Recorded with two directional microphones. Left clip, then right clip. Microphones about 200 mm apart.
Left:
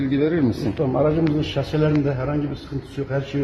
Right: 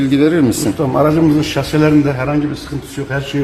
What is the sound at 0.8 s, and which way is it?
Speech, 25° left (ahead or behind).